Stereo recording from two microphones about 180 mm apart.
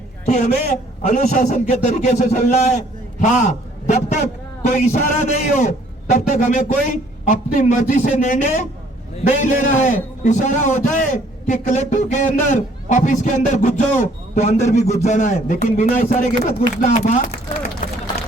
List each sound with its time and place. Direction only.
0.3 s a man's voice: 40° left (ahead or behind)